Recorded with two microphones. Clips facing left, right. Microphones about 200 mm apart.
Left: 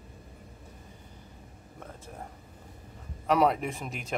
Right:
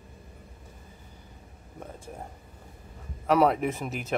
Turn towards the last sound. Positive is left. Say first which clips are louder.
# right 5 dB
turn(degrees=-5)  # may be behind; listen again after turning